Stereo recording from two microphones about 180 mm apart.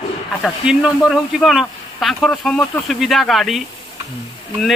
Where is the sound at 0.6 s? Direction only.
5° right (ahead or behind).